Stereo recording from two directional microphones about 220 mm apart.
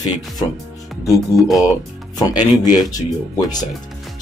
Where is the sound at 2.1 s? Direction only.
15° left (ahead or behind).